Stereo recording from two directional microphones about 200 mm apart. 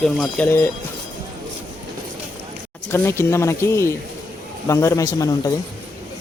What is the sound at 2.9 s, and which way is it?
Speech, 10° left (ahead or behind).